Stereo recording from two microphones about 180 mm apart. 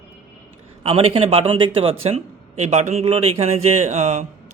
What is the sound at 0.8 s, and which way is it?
Speech, 30° right (ahead or behind).